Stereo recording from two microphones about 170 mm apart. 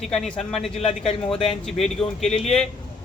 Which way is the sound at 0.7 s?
35° left (ahead or behind).